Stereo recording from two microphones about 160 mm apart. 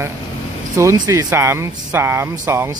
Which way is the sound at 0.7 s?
20° right (ahead or behind).